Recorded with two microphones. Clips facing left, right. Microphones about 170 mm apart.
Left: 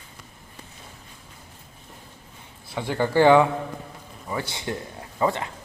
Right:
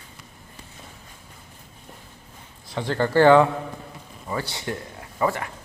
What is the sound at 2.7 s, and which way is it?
A man's voice, 10° left (ahead or behind).